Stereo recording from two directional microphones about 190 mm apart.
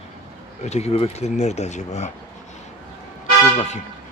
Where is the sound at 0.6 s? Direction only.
35° left (ahead or behind).